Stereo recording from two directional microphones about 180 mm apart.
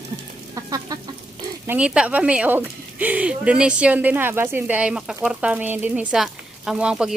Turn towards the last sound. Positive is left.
turn(degrees=-5)  # may be behind; listen again after turning